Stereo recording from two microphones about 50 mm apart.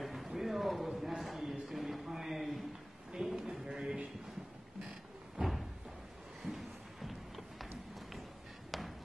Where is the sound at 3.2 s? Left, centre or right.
Centre.